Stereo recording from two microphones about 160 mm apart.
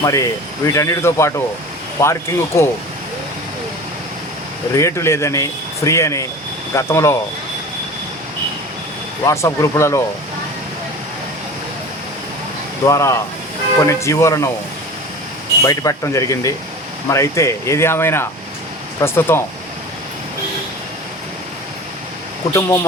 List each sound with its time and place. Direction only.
0.0 s speech: 20° left (ahead or behind)
4.7 s speech: 20° left (ahead or behind)
9.2 s speech: 20° left (ahead or behind)
12.8 s speech: 20° left (ahead or behind)
15.6 s speech: 20° left (ahead or behind)
22.5 s speech: 20° left (ahead or behind)